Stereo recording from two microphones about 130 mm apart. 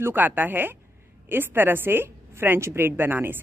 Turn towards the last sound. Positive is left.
turn(degrees=-15)  # may be behind; listen again after turning